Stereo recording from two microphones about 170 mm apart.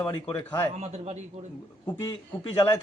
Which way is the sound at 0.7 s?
40° right (ahead or behind).